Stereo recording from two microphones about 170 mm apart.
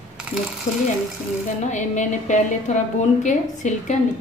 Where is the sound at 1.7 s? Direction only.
45° left (ahead or behind).